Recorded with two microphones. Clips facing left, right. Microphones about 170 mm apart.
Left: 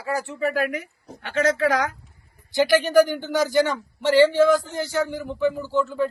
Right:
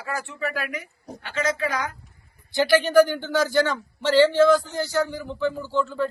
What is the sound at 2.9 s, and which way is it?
Speech, 15° left (ahead or behind).